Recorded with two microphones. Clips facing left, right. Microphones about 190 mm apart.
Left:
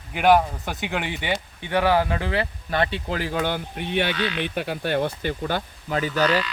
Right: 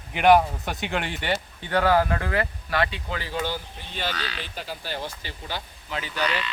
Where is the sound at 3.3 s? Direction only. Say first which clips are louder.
Left 4 dB; 60° left (ahead or behind); by 6.4 s 40° left (ahead or behind).